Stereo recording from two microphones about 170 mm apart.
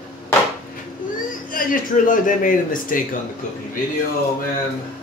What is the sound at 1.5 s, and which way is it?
Speech, 55° left (ahead or behind).